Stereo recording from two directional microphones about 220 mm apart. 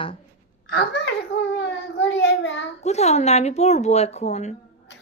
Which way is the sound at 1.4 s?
50° left (ahead or behind).